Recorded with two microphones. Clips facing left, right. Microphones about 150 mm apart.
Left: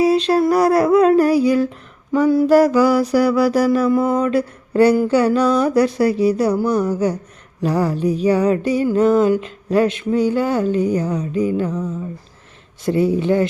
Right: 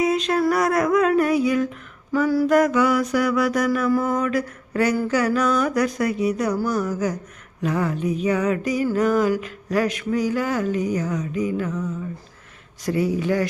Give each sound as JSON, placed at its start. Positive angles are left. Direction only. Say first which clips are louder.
{"t": 0.0, "sound": "music", "louder": "left 5 dB", "side_deg": 35}
{"t": 2.1, "sound": "speech", "louder": "left 5 dB", "side_deg": 25}
{"t": 2.6, "sound": "music", "louder": "left 5 dB", "side_deg": 35}
{"t": 12.8, "sound": "speech", "louder": "left 5 dB", "side_deg": 25}